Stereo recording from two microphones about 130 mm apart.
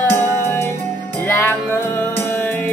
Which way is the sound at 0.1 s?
20° left (ahead or behind).